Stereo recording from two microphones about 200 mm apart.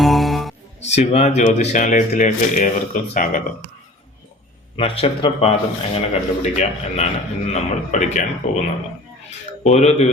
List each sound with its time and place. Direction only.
0.0 s music: centre (ahead or behind)
0.9 s a man's voice: 30° left (ahead or behind)
4.8 s a man's voice: 30° left (ahead or behind)
9.6 s a man's voice: 35° left (ahead or behind)